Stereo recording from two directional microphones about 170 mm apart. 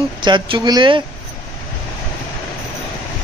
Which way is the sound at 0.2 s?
25° right (ahead or behind).